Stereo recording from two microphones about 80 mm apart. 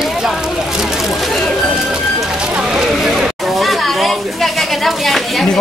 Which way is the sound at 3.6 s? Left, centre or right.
Centre.